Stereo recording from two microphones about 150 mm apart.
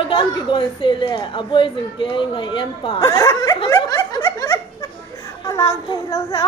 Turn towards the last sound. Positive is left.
turn(degrees=20)  # may be behind; listen again after turning